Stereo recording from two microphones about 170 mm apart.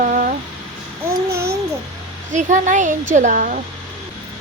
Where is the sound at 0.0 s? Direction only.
50° right (ahead or behind).